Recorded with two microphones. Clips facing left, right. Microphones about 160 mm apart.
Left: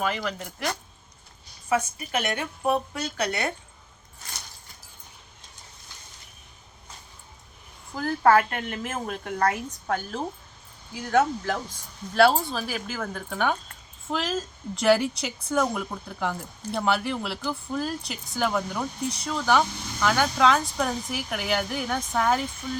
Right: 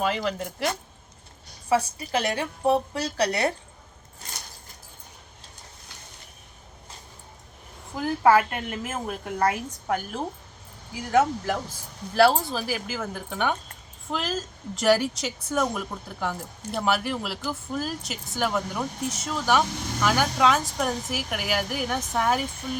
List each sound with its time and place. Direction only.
0.0 s a woman's voice: 30° right (ahead or behind)
7.9 s a woman's voice: 15° right (ahead or behind)